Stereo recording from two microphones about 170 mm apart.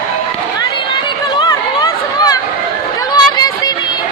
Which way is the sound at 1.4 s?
25° left (ahead or behind).